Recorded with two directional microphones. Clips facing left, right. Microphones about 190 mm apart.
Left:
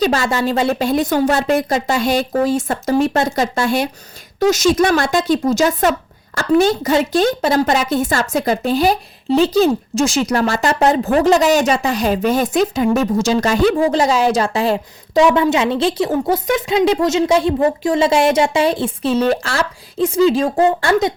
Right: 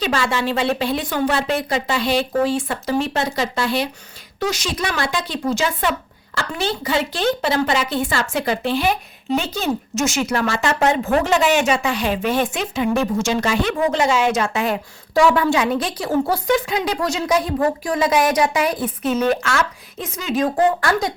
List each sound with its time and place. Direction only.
0.0 s speech: 40° left (ahead or behind)
15.1 s a woman's voice: 20° left (ahead or behind)